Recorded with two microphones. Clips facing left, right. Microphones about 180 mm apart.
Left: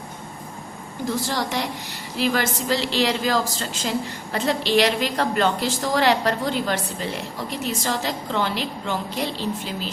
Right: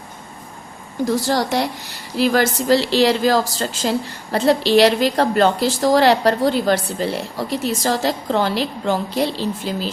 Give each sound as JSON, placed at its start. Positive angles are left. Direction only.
{"t": 1.0, "sound": "speech", "side_deg": -40}